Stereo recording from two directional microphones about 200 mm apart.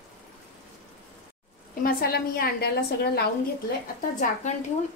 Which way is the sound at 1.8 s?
50° left (ahead or behind).